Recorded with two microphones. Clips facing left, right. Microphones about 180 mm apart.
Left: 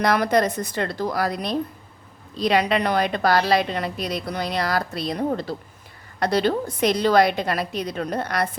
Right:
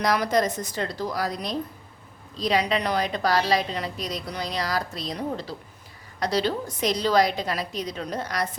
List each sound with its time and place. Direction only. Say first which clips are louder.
0.0 s a woman's voice: left 3 dB; 60° left (ahead or behind)